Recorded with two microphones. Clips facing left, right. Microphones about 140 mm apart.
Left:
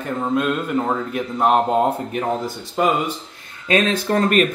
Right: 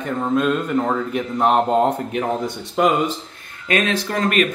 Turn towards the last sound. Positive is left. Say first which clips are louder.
# left 3 dB
turn(degrees=35)  # may be behind; listen again after turning